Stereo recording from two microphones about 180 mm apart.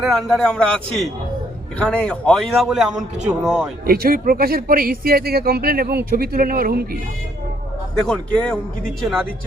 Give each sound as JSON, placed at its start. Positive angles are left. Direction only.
{"t": 0.0, "sound": "speech", "side_deg": 0}
{"t": 3.8, "sound": "speech", "side_deg": -55}
{"t": 8.0, "sound": "speech", "side_deg": 5}